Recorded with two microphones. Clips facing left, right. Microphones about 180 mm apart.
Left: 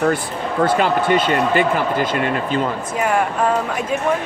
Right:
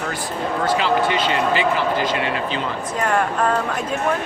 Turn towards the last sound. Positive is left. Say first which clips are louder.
# left 2 dB
turn(degrees=10)  # may be behind; listen again after turning